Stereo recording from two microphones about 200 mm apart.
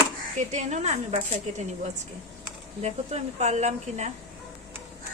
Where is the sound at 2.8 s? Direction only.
35° right (ahead or behind).